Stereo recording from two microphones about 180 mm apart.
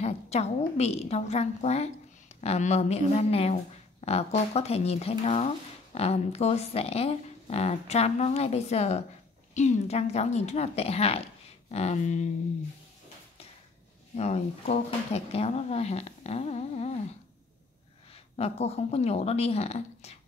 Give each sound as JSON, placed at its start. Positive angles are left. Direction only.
{"t": 0.0, "sound": "a woman's voice", "side_deg": 35}
{"t": 14.1, "sound": "speech", "side_deg": 35}
{"t": 18.1, "sound": "speech", "side_deg": 35}